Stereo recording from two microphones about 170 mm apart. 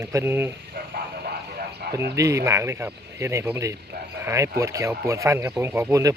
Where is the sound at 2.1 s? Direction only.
20° right (ahead or behind).